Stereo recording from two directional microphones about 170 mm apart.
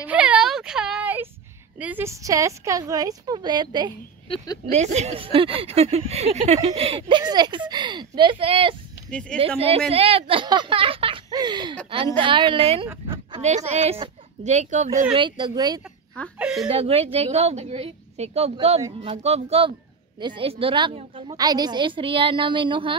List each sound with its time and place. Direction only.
0.0 s whimper: 10° right (ahead or behind)
1.8 s a woman's voice: 10° right (ahead or behind)
4.6 s speech: 45° right (ahead or behind); by 13.4 s 25° right (ahead or behind)
13.7 s a woman's voice: 40° right (ahead or behind)
15.1 s a woman's voice: 25° right (ahead or behind)
16.3 s speech: 5° right (ahead or behind)
16.6 s a woman's voice: 35° right (ahead or behind)